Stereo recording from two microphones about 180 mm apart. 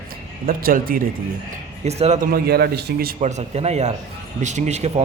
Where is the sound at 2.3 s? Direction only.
60° right (ahead or behind).